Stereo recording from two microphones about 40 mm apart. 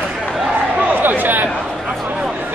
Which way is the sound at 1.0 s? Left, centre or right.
Right.